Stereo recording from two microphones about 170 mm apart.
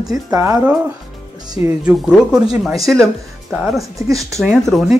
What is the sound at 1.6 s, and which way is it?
A man's voice, 5° right (ahead or behind).